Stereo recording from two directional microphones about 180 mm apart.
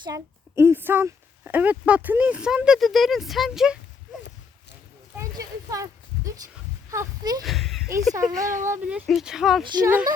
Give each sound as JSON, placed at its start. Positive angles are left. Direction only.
{"t": 0.0, "sound": "speech", "side_deg": -15}
{"t": 5.1, "sound": "a sound", "side_deg": -20}
{"t": 6.9, "sound": "speech", "side_deg": -20}
{"t": 7.4, "sound": "speech", "side_deg": 0}
{"t": 8.3, "sound": "speech", "side_deg": -45}
{"t": 8.6, "sound": "speech", "side_deg": -10}
{"t": 9.6, "sound": "speech", "side_deg": -15}